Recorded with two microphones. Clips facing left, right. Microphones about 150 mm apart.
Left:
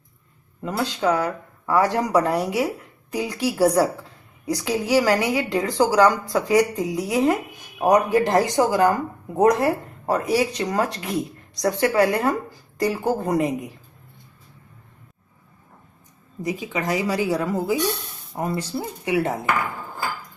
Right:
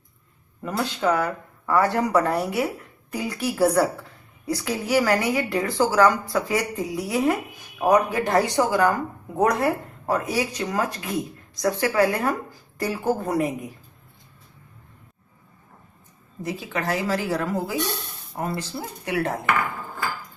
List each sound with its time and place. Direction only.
0.6 s speech: 15° left (ahead or behind)
16.4 s speech: 15° left (ahead or behind)